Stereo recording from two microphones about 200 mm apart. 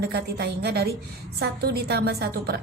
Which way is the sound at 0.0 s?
55° right (ahead or behind).